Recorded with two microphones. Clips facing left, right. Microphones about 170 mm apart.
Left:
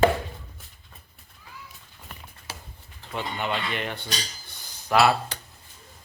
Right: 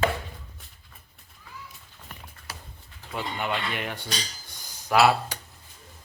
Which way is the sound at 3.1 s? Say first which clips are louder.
Left 1 dB; 5° right (ahead or behind).